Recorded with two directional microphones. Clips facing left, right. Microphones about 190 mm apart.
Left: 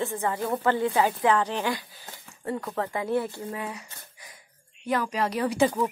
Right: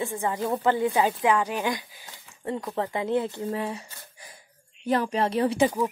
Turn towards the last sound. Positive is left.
turn(degrees=-15)  # may be behind; listen again after turning